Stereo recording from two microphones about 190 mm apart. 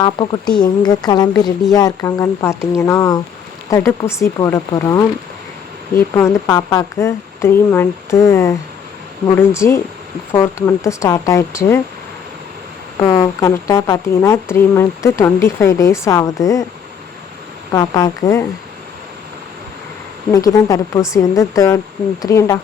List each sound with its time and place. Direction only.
0.0 s speech: 25° left (ahead or behind)
6.1 s speech: 15° left (ahead or behind)
13.0 s speech: 20° left (ahead or behind)
17.7 s speech: 20° left (ahead or behind)
20.3 s speech: 20° left (ahead or behind)